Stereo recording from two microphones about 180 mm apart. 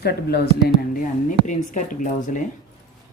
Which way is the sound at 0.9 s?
45° left (ahead or behind).